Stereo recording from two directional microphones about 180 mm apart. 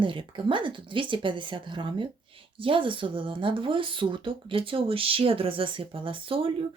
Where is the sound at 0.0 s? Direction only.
30° right (ahead or behind).